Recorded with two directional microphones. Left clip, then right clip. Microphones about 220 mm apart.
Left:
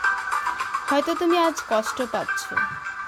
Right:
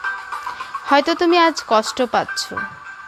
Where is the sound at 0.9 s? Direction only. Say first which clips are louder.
Right 7 dB; 15° right (ahead or behind).